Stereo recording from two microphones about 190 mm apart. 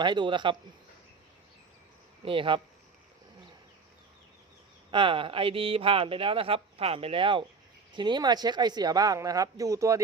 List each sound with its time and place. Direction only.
0.0 s speech: 25° right (ahead or behind)
2.2 s speech: 25° right (ahead or behind)
4.9 s speech: 25° right (ahead or behind)